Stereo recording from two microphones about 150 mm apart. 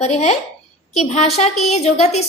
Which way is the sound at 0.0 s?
50° left (ahead or behind).